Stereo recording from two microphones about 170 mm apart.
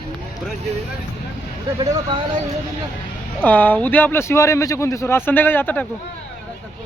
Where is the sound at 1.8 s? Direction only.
20° right (ahead or behind).